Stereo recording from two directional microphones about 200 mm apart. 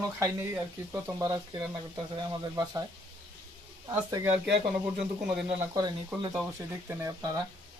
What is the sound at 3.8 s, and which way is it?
Speech, 20° right (ahead or behind).